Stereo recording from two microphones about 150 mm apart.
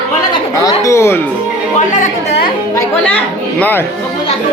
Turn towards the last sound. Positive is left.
turn(degrees=15)  # may be behind; listen again after turning